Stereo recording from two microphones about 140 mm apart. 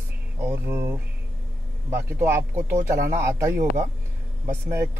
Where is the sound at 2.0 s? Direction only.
15° right (ahead or behind).